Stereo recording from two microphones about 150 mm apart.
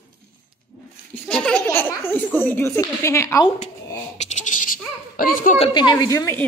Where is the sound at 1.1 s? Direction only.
5° left (ahead or behind).